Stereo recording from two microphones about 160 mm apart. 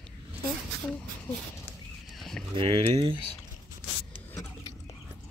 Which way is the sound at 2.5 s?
35° right (ahead or behind).